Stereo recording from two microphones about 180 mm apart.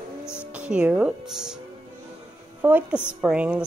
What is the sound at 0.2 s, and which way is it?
Music, 15° left (ahead or behind).